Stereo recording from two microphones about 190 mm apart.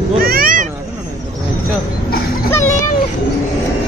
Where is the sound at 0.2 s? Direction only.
50° right (ahead or behind).